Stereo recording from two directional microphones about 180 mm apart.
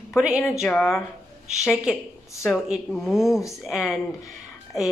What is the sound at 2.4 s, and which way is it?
Speech, centre (ahead or behind).